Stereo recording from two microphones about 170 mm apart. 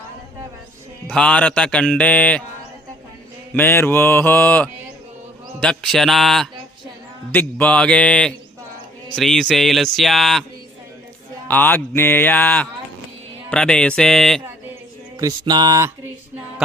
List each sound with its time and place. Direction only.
1.0 s speech: 5° left (ahead or behind)
3.5 s speech: 10° left (ahead or behind)
11.4 s speech: 10° left (ahead or behind)
15.2 s music: 20° right (ahead or behind)